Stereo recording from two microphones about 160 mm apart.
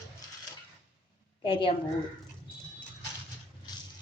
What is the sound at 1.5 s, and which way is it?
Speech, 35° left (ahead or behind).